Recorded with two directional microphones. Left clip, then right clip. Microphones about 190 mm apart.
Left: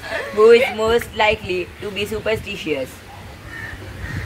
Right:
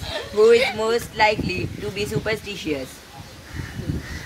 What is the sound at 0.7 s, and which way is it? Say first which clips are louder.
Speech: left 3 dB; 30° right (ahead or behind).